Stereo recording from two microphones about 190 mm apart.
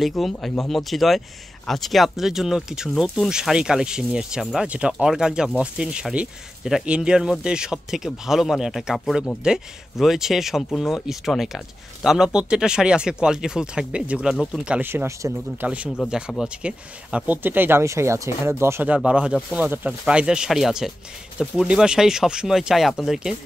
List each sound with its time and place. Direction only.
0.0 s speech: centre (ahead or behind)